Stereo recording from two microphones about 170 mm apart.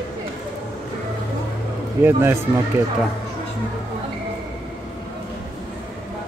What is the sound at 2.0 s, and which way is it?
Speech, 15° right (ahead or behind).